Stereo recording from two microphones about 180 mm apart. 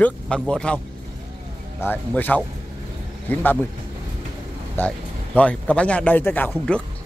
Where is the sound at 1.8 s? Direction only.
10° left (ahead or behind).